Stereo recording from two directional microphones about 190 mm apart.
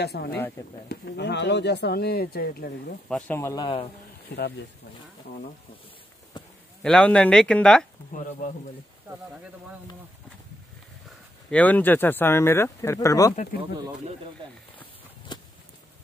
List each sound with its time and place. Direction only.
0.0 s speech: 60° left (ahead or behind)
3.1 s speech: 5° left (ahead or behind)
3.6 s a man's voice: 30° left (ahead or behind)
4.3 s speech: 55° left (ahead or behind)
6.4 s a sound: 25° left (ahead or behind)
6.8 s speech: 5° left (ahead or behind)
8.1 s speech: 45° left (ahead or behind)
11.5 s speech: 10° left (ahead or behind)
15.3 s a sound: 25° left (ahead or behind)